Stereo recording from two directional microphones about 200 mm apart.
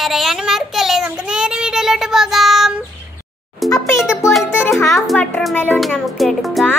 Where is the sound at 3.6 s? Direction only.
Centre (ahead or behind).